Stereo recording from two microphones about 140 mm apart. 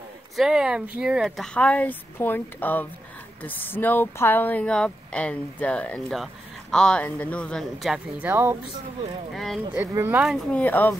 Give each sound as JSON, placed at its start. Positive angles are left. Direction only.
{"t": 0.4, "sound": "speech", "side_deg": -5}
{"t": 8.2, "sound": "speech", "side_deg": -15}
{"t": 9.3, "sound": "speech", "side_deg": 0}
{"t": 9.8, "sound": "speech", "side_deg": -15}
{"t": 10.2, "sound": "speech", "side_deg": 5}